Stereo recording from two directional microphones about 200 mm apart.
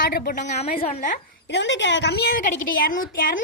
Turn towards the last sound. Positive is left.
turn(degrees=45)  # may be behind; listen again after turning